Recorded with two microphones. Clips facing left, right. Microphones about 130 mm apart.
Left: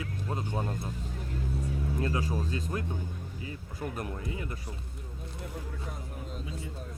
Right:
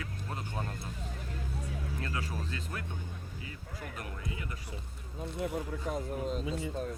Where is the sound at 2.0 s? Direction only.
25° left (ahead or behind).